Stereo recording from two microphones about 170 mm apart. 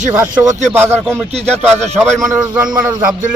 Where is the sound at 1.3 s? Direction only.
40° right (ahead or behind).